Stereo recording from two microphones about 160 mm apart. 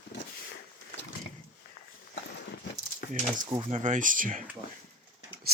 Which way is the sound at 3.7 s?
50° right (ahead or behind).